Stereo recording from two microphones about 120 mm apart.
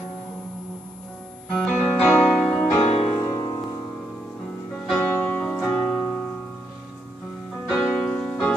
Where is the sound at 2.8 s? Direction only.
60° left (ahead or behind).